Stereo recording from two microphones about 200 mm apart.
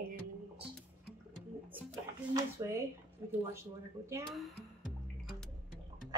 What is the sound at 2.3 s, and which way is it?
A woman's voice, 15° right (ahead or behind).